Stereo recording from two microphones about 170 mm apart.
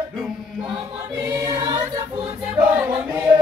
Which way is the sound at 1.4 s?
25° right (ahead or behind).